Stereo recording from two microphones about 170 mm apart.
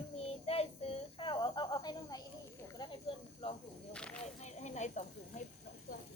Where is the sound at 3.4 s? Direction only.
35° left (ahead or behind).